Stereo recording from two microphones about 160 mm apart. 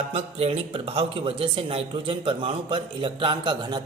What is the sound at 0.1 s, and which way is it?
A man's voice, 40° right (ahead or behind).